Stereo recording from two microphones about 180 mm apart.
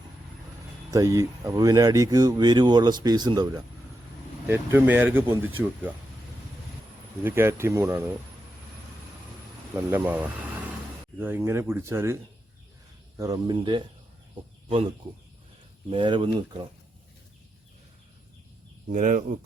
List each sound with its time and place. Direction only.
0.9 s speech: 15° right (ahead or behind)
4.4 s speech: 10° right (ahead or behind)
7.3 s speech: 15° right (ahead or behind)
9.7 s speech: 10° right (ahead or behind)
13.1 s speech: 20° right (ahead or behind)
15.9 s speech: 25° right (ahead or behind)
18.9 s speech: 45° right (ahead or behind)